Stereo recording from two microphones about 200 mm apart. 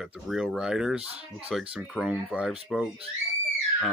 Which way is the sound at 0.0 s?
Centre (ahead or behind).